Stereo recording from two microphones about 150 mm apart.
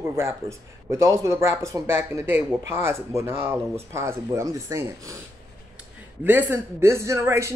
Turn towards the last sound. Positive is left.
turn(degrees=-20)  # may be behind; listen again after turning